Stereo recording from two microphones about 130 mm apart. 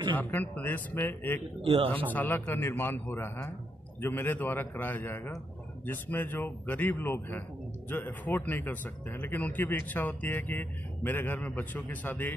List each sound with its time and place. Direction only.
0.1 s speech: 15° left (ahead or behind)
1.6 s speech: 45° right (ahead or behind)
2.1 s speech: 15° left (ahead or behind)